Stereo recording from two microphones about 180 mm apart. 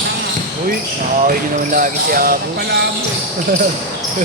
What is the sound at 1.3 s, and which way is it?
Speech, 50° right (ahead or behind).